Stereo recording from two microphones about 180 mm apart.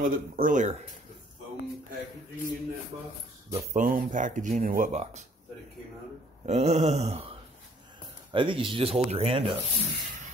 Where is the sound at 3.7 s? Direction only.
50° right (ahead or behind).